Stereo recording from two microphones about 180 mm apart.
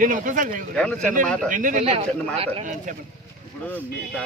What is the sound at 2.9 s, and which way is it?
Speech, 45° right (ahead or behind).